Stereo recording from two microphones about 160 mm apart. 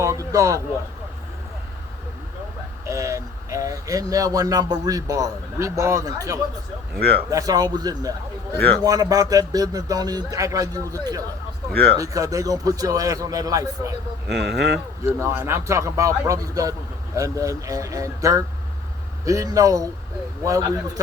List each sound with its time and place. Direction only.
0.0 s a sound: 20° right (ahead or behind)
2.8 s speech: 20° right (ahead or behind)
14.3 s speech: 90° right
15.0 s speech: 15° right (ahead or behind)